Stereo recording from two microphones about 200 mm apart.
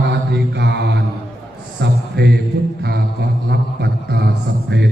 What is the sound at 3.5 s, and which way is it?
Mantra, 55° right (ahead or behind).